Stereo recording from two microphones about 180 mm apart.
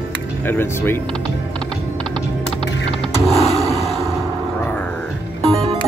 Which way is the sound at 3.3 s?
35° left (ahead or behind).